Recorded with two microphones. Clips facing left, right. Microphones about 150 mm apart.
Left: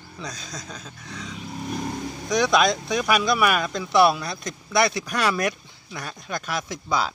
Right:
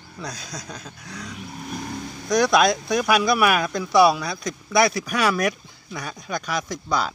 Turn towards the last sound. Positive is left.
turn(degrees=0)  # may be behind; listen again after turning